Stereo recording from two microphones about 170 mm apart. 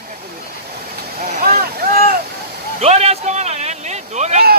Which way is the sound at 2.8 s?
40° right (ahead or behind).